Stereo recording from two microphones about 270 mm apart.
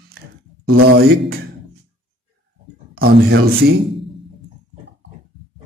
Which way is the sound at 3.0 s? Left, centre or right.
Right.